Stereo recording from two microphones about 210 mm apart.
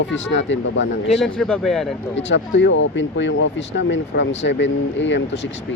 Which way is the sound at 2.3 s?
60° left (ahead or behind).